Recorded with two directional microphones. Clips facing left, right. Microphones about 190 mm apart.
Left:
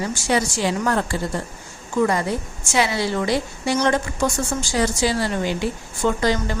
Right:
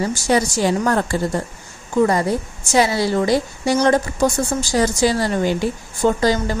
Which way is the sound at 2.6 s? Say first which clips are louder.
Right 4 dB; 40° right (ahead or behind).